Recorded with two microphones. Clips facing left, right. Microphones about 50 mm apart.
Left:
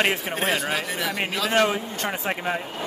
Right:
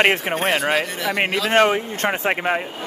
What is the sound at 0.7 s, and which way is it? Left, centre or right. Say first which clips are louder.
Speech: right 5 dB; centre.